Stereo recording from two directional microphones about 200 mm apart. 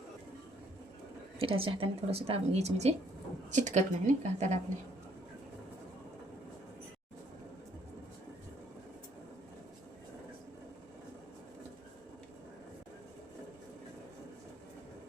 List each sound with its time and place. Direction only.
1.4 s a woman's voice: 25° right (ahead or behind)